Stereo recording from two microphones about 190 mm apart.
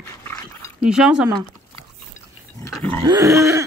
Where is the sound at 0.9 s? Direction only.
5° right (ahead or behind).